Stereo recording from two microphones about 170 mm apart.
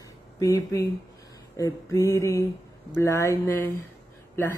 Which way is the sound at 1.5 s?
20° left (ahead or behind).